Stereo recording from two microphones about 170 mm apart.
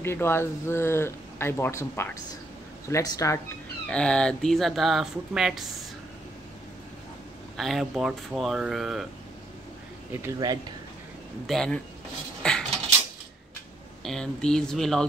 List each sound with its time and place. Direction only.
0.0 s speech: 15° left (ahead or behind)
3.9 s speech: 5° left (ahead or behind)
7.5 s speech: centre (ahead or behind)
10.2 s speech: 20° right (ahead or behind)
11.4 s speech: 5° left (ahead or behind)
12.4 s a sound: 5° left (ahead or behind)
14.0 s speech: 5° left (ahead or behind)